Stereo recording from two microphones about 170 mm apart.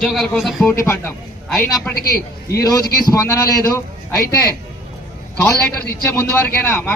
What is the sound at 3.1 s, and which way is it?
Speech, 20° left (ahead or behind).